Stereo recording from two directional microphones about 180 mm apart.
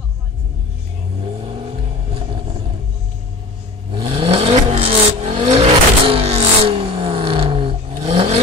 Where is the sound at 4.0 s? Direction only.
30° right (ahead or behind).